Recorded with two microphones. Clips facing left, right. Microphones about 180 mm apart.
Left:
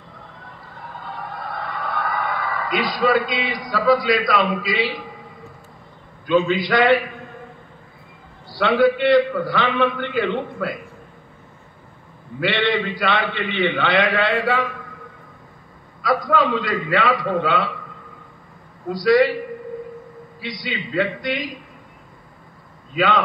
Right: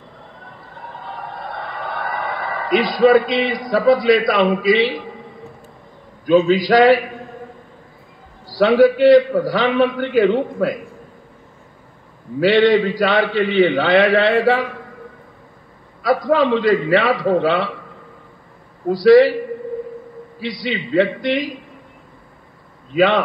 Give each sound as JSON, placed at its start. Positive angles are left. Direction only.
{"t": 1.5, "sound": "a man's voice", "side_deg": -30}
{"t": 6.2, "sound": "a man's voice", "side_deg": -40}
{"t": 8.5, "sound": "a man's voice", "side_deg": -40}
{"t": 12.4, "sound": "a man's voice", "side_deg": -40}
{"t": 16.1, "sound": "a man's voice", "side_deg": -30}
{"t": 18.9, "sound": "a man's voice", "side_deg": -30}
{"t": 20.3, "sound": "a man's voice", "side_deg": -30}
{"t": 22.9, "sound": "a man's voice", "side_deg": -25}